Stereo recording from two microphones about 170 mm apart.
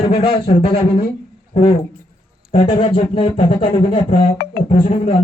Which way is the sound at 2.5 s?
30° left (ahead or behind).